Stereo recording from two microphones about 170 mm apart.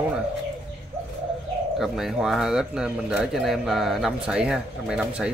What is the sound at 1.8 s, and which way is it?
Speech, centre (ahead or behind).